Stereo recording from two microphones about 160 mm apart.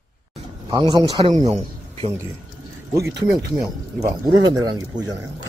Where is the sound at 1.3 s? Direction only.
45° right (ahead or behind).